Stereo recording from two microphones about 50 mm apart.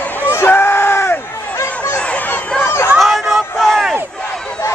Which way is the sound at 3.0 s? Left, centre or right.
Centre.